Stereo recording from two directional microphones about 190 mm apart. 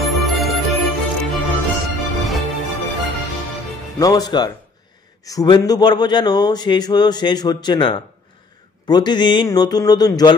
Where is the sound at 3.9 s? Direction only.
20° left (ahead or behind).